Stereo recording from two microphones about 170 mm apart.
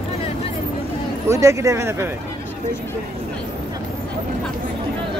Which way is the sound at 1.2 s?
15° right (ahead or behind).